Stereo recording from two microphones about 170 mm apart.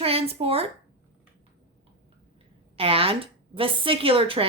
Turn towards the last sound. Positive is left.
turn(degrees=-35)  # may be behind; listen again after turning